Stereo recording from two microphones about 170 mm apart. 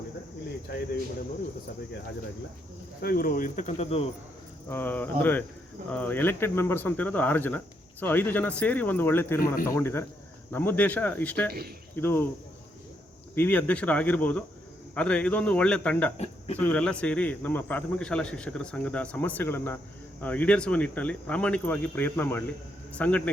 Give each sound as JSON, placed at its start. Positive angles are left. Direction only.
{"t": 3.0, "sound": "speech", "side_deg": 60}
{"t": 4.7, "sound": "speech", "side_deg": 10}
{"t": 13.3, "sound": "speech", "side_deg": 10}
{"t": 16.1, "sound": "speech", "side_deg": 40}
{"t": 16.6, "sound": "speech", "side_deg": 10}